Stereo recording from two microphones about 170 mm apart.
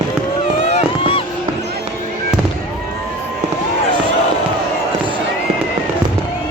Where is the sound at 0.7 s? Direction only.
30° left (ahead or behind).